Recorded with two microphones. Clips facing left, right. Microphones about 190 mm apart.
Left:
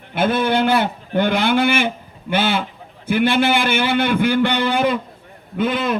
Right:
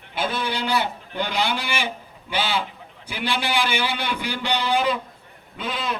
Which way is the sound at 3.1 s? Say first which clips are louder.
Left 10 dB; 55° left (ahead or behind).